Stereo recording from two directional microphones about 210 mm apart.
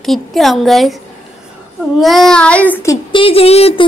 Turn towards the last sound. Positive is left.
turn(degrees=30)  # may be behind; listen again after turning